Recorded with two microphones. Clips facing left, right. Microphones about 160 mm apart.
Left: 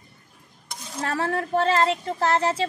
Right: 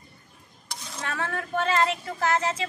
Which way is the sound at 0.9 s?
35° left (ahead or behind).